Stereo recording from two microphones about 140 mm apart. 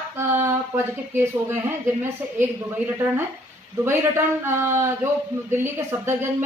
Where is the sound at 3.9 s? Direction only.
15° right (ahead or behind).